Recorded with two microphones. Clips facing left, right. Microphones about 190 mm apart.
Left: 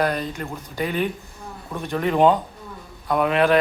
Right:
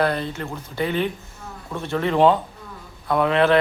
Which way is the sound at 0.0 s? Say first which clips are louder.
Right 1 dB; 15° left (ahead or behind).